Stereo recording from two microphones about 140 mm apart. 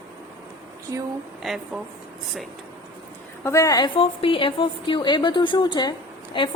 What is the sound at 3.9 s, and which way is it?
A woman's voice, 40° left (ahead or behind).